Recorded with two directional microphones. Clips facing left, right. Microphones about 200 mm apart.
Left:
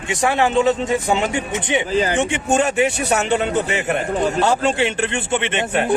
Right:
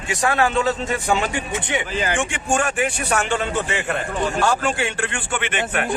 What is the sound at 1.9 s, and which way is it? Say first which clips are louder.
Speech: left 6 dB; 35° left (ahead or behind).